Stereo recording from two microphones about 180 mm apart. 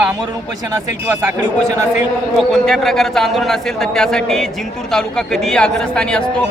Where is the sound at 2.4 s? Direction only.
Centre (ahead or behind).